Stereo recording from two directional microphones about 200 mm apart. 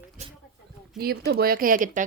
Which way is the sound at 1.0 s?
50° right (ahead or behind).